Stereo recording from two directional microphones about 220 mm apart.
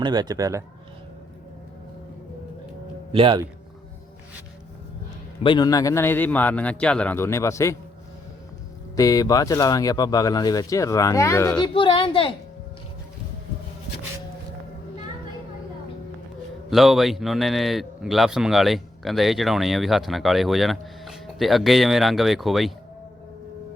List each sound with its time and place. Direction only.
0.0 s a man's voice: 20° right (ahead or behind)
3.1 s a man's voice: 25° right (ahead or behind)
5.4 s speech: 20° left (ahead or behind)
9.0 s speech: 15° left (ahead or behind)
11.6 s music: 20° left (ahead or behind)
16.6 s speech: centre (ahead or behind)